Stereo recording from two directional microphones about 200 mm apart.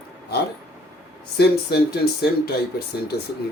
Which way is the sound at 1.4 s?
50° left (ahead or behind).